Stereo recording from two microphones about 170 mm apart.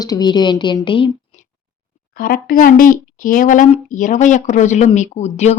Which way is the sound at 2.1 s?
60° left (ahead or behind).